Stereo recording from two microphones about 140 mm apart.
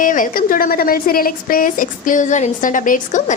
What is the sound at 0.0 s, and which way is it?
A woman's voice, 75° left (ahead or behind).